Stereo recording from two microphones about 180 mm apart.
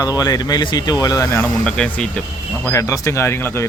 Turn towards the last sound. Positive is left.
turn(degrees=15)  # may be behind; listen again after turning